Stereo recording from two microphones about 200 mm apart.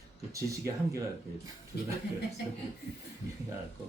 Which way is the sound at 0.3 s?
15° right (ahead or behind).